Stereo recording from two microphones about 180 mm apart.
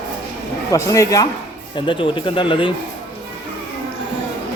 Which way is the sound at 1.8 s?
30° left (ahead or behind).